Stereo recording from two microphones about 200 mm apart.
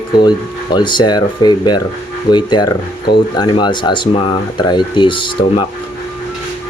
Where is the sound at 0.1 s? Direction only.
20° left (ahead or behind).